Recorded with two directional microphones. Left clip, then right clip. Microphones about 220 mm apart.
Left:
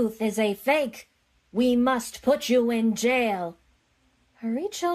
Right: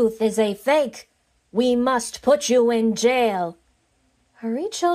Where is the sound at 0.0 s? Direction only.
15° right (ahead or behind).